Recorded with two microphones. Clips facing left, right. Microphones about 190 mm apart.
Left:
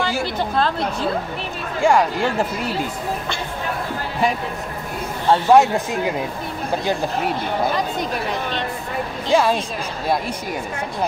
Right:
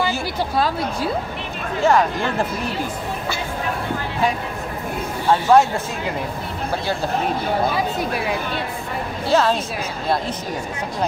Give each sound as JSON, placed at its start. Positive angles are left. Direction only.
{"t": 0.2, "sound": "a woman's voice", "side_deg": -10}
{"t": 1.8, "sound": "speech", "side_deg": 10}
{"t": 5.3, "sound": "speech", "side_deg": 15}
{"t": 7.7, "sound": "a woman's voice", "side_deg": -5}
{"t": 9.3, "sound": "speech", "side_deg": 10}